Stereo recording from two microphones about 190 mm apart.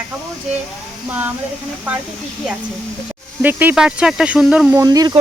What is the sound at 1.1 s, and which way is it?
Speech, 10° right (ahead or behind).